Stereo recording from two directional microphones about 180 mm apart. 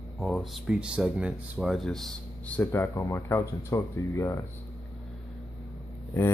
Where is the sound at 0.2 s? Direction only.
Centre (ahead or behind).